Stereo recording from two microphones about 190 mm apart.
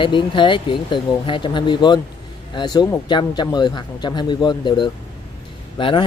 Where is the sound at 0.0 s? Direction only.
25° left (ahead or behind).